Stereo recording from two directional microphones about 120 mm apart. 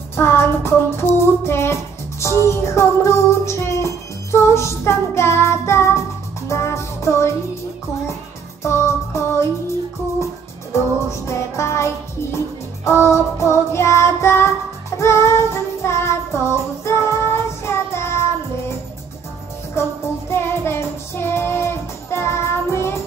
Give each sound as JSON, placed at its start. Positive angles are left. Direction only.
{"t": 0.1, "sound": "music", "side_deg": 20}
{"t": 8.6, "sound": "music", "side_deg": 25}
{"t": 10.7, "sound": "music", "side_deg": 25}
{"t": 15.0, "sound": "child singing", "side_deg": 20}
{"t": 16.8, "sound": "music", "side_deg": 20}
{"t": 19.8, "sound": "music", "side_deg": 20}